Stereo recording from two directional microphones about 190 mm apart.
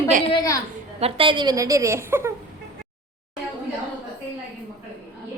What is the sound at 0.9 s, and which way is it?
A woman's voice, 30° right (ahead or behind).